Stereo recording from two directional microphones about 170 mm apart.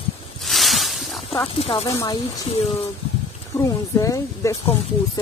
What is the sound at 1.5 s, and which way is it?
Speech, 35° left (ahead or behind).